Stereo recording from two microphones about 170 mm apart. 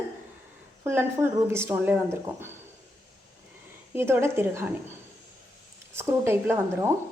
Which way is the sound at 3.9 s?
15° right (ahead or behind).